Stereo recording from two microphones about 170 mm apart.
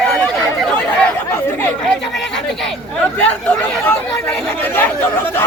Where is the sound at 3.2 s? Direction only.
10° left (ahead or behind).